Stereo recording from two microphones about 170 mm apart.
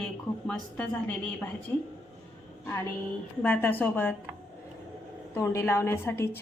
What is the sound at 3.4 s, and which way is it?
Speech, 10° left (ahead or behind).